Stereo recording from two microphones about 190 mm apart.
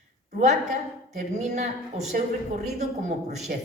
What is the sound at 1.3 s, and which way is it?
A woman's voice, 35° right (ahead or behind).